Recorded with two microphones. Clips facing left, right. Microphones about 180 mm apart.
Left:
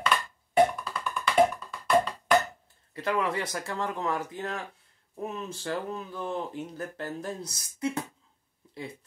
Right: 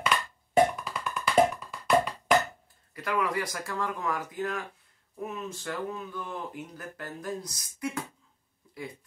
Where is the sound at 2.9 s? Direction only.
25° left (ahead or behind).